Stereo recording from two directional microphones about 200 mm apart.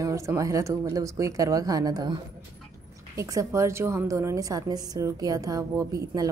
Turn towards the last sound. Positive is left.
turn(degrees=-15)  # may be behind; listen again after turning